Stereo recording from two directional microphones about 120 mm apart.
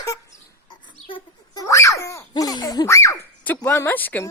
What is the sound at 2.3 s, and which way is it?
Laughter, 35° left (ahead or behind).